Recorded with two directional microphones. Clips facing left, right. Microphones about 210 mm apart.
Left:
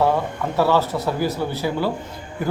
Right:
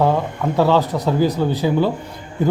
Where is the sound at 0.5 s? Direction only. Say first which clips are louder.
Right 3 dB; 15° right (ahead or behind).